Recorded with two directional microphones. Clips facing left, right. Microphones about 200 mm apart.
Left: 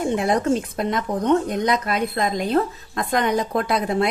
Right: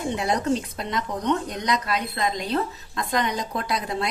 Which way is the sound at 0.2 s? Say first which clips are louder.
Left 4 dB; 50° left (ahead or behind).